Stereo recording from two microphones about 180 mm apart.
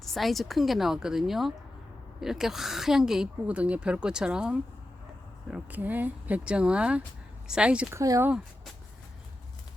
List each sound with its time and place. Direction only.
0.0 s a woman's voice: centre (ahead or behind)
8.0 s speech: 20° right (ahead or behind)